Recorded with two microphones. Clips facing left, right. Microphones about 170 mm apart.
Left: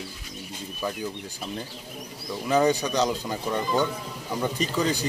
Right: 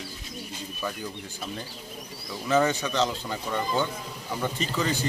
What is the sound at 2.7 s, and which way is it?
Speech, 40° left (ahead or behind).